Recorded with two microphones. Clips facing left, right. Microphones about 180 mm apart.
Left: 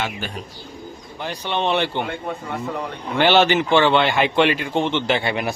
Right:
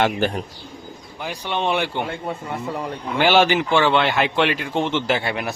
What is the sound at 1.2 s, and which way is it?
Speech, 5° right (ahead or behind).